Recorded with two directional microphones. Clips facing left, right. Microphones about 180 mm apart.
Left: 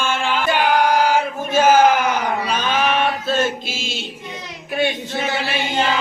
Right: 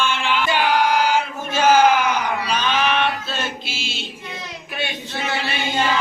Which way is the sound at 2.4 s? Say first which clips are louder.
Left 1 dB; 50° left (ahead or behind).